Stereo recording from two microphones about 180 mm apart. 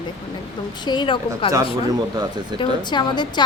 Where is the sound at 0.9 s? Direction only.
25° left (ahead or behind).